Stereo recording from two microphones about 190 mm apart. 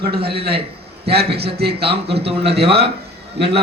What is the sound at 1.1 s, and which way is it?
Speech, 55° right (ahead or behind).